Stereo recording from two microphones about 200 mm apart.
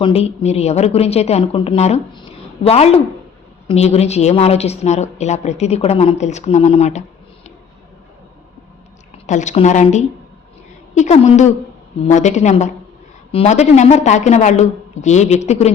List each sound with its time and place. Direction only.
0.0 s a woman's voice: 30° left (ahead or behind)
9.1 s a woman's voice: 35° left (ahead or behind)